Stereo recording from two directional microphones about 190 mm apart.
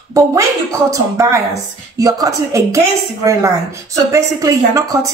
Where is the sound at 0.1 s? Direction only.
15° right (ahead or behind).